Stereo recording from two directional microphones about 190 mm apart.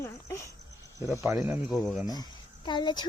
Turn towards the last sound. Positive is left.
turn(degrees=25)  # may be behind; listen again after turning